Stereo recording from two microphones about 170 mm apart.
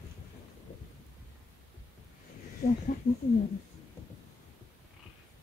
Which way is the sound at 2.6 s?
45° left (ahead or behind).